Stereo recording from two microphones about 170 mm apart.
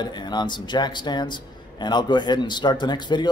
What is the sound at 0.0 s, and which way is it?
A man's voice, 25° left (ahead or behind).